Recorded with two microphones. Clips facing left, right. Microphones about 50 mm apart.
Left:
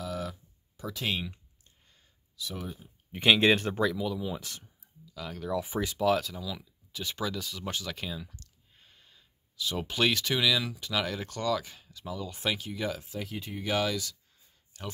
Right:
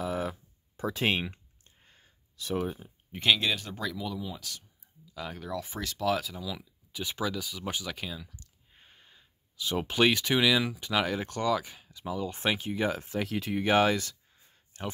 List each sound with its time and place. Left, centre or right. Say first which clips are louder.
0.0 s a sound: right 4 dB; right
3.3 s speech: left 7 dB; left
5.1 s speech: even; centre
5.5 s speech: left 8 dB; centre
6.0 s speech: left 1 dB; centre
8.4 s speech: right 1 dB; right
12.3 s speech: right 2 dB; right
13.0 s speech: right 6 dB; right
13.3 s speech: right 7 dB; right
13.6 s a sound: right 5 dB; right